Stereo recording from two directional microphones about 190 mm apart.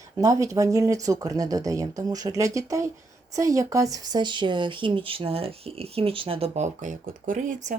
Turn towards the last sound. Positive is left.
turn(degrees=-40)  # may be behind; listen again after turning